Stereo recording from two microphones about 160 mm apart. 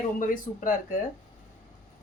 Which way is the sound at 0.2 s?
55° left (ahead or behind).